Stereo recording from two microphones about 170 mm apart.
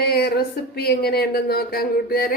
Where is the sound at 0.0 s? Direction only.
70° left (ahead or behind).